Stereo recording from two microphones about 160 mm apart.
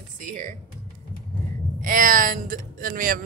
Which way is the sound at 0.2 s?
55° right (ahead or behind).